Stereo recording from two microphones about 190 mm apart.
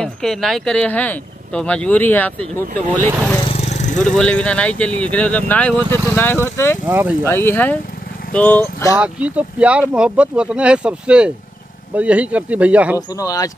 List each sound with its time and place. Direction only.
0.0 s speech: centre (ahead or behind)
3.3 s vehicle: 30° left (ahead or behind)
4.1 s speech: 5° left (ahead or behind)
6.9 s speech: 10° right (ahead or behind)
7.2 s speech: 10° left (ahead or behind)
8.9 s speech: 5° right (ahead or behind)
13.1 s speech: 20° left (ahead or behind)